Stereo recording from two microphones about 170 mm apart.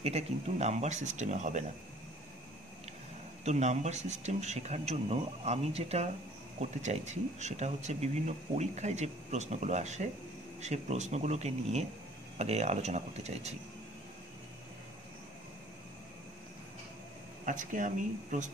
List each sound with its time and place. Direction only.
0.0 s speech: 40° right (ahead or behind)
3.4 s speech: 40° right (ahead or behind)
17.5 s speech: 50° right (ahead or behind)